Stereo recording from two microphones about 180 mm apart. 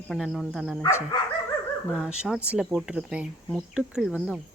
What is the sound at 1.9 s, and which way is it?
Speech, 5° right (ahead or behind).